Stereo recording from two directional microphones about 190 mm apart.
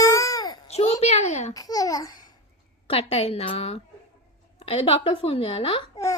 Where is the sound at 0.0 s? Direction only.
15° left (ahead or behind).